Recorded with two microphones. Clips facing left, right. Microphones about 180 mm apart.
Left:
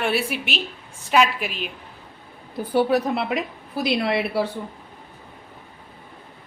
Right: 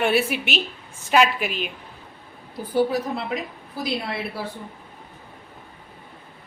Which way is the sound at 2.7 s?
70° left (ahead or behind).